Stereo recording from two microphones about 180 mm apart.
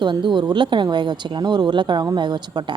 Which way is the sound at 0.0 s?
25° right (ahead or behind).